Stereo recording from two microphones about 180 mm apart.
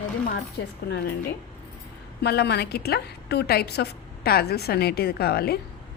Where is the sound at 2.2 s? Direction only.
65° left (ahead or behind).